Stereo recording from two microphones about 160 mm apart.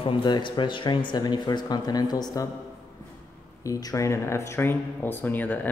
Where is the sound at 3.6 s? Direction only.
20° left (ahead or behind).